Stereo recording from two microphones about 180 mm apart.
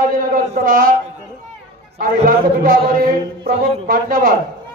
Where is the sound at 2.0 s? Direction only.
50° right (ahead or behind).